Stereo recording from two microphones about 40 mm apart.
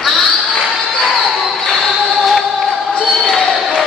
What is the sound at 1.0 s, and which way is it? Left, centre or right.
Basketball bounce, centre.